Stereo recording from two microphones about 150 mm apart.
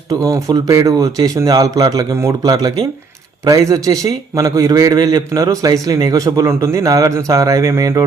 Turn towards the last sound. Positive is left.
turn(degrees=-20)  # may be behind; listen again after turning